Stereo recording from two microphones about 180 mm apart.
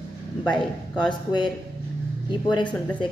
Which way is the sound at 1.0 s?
25° left (ahead or behind).